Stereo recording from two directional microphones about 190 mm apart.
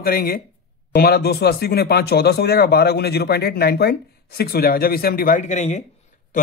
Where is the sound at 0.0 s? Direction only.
50° left (ahead or behind).